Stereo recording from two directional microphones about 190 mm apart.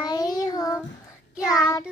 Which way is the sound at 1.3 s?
5° right (ahead or behind).